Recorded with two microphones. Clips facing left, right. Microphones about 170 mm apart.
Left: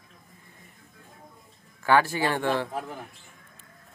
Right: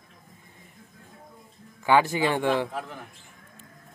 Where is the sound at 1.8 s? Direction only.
15° right (ahead or behind).